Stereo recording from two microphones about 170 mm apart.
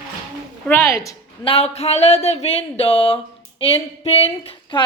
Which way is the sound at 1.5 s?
35° left (ahead or behind).